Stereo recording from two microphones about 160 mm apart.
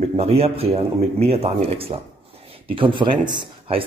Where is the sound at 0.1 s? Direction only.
40° right (ahead or behind).